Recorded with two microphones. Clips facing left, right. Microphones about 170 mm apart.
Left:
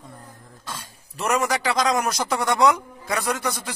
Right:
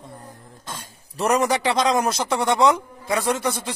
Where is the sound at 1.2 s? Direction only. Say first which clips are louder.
Right 3 dB; 35° right (ahead or behind).